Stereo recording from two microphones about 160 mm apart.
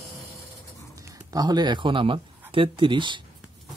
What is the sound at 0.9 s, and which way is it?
Speech, 20° right (ahead or behind).